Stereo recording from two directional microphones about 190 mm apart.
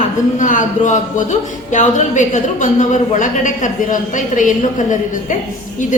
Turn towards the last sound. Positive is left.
turn(degrees=40)  # may be behind; listen again after turning